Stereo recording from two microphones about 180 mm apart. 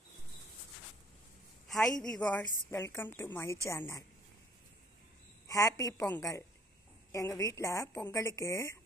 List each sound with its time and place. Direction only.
1.7 s a woman's voice: centre (ahead or behind); by 4.0 s 20° left (ahead or behind)
5.5 s a woman's voice: 20° left (ahead or behind)